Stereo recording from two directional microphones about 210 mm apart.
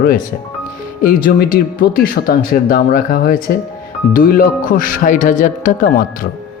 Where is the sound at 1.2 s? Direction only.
45° left (ahead or behind).